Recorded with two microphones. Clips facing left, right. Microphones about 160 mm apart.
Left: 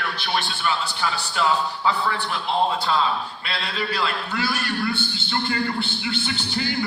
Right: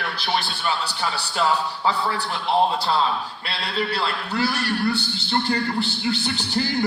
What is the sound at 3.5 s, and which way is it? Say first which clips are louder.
A man's voice: right 2 dB; 35° right (ahead or behind).